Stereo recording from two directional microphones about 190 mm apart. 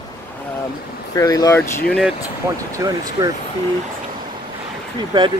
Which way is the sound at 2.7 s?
20° right (ahead or behind).